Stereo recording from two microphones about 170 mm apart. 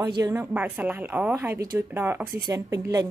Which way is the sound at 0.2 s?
15° right (ahead or behind).